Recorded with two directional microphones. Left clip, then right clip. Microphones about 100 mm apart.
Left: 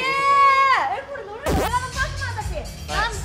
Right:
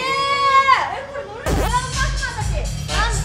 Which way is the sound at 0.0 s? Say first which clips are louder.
Left 2 dB; 20° right (ahead or behind).